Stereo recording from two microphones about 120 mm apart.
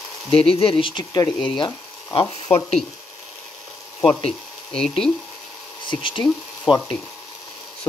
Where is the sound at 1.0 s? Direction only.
35° left (ahead or behind).